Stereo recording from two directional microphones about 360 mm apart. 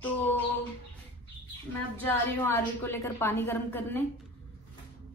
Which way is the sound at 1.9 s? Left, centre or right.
Centre.